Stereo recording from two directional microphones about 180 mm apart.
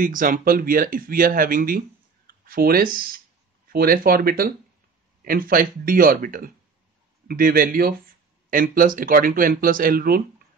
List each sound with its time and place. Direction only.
0.0 s speech: 50° right (ahead or behind)